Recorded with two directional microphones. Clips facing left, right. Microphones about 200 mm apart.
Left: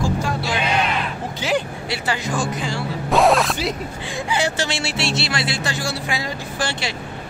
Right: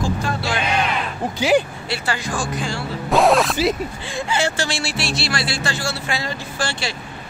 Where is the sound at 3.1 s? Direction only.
Centre (ahead or behind).